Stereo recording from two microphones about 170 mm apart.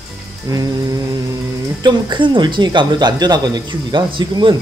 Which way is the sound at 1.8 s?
25° right (ahead or behind).